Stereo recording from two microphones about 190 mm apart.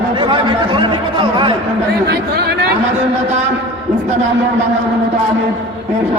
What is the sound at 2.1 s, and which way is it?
Speech, 60° right (ahead or behind).